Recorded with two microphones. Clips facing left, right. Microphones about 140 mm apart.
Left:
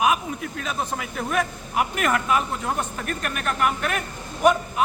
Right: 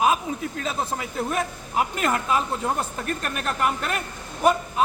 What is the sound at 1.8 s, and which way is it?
A man's voice, 25° right (ahead or behind).